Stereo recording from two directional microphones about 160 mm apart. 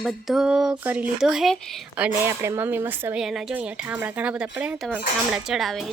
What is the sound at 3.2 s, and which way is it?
A woman's voice, centre (ahead or behind).